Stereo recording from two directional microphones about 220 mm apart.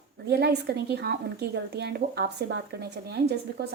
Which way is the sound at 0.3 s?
45° right (ahead or behind).